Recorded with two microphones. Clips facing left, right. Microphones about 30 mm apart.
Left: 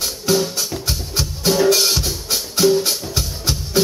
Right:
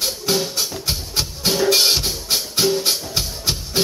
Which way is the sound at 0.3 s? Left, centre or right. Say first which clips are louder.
Left 4 dB; right.